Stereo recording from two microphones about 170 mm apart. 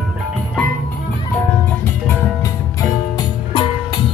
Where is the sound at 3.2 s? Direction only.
25° left (ahead or behind).